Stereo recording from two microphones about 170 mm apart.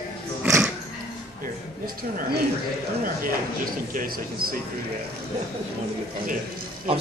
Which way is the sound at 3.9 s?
55° right (ahead or behind).